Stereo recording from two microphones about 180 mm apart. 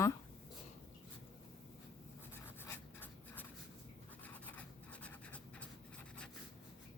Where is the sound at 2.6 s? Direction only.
10° left (ahead or behind).